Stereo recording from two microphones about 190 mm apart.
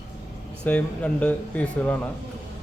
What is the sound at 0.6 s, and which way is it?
Speech, 5° left (ahead or behind).